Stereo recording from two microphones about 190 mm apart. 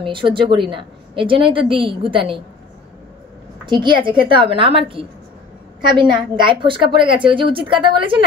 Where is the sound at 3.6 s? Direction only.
25° right (ahead or behind).